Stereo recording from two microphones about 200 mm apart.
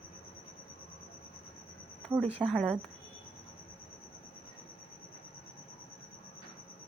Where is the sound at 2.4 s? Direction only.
5° left (ahead or behind).